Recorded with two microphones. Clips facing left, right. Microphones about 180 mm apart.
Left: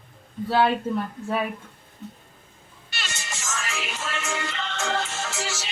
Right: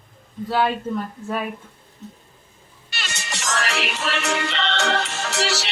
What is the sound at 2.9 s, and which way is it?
Music, 75° right (ahead or behind).